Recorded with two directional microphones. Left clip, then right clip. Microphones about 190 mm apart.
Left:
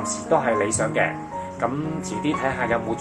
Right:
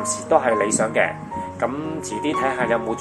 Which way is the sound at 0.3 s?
35° right (ahead or behind).